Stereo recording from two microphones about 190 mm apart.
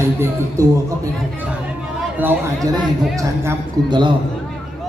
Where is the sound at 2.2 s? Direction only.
10° right (ahead or behind).